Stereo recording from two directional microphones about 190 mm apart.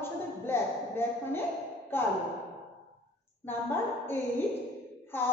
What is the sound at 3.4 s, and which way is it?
A woman's voice, 10° left (ahead or behind).